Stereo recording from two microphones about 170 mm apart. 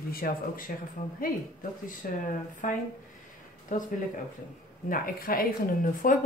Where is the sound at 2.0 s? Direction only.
55° left (ahead or behind).